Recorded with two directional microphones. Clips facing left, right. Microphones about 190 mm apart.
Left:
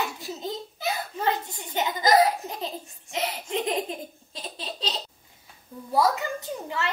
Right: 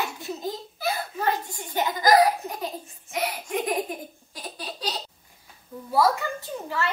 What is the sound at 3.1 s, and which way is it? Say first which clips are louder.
Laughter: right 1 dB; 25° left (ahead or behind).